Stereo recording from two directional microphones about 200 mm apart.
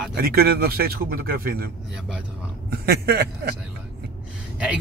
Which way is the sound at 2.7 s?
55° right (ahead or behind).